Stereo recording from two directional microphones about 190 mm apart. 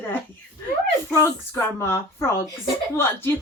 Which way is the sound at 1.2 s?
15° left (ahead or behind).